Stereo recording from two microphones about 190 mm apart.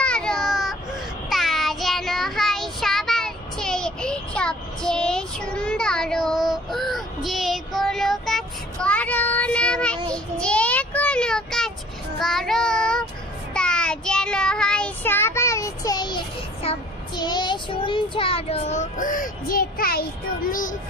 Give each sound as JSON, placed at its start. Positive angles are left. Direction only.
{"t": 0.0, "sound": "baby cry", "side_deg": 5}
{"t": 1.3, "sound": "child singing", "side_deg": 0}